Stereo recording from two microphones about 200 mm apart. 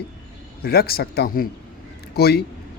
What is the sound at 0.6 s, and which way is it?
Speech, 50° left (ahead or behind).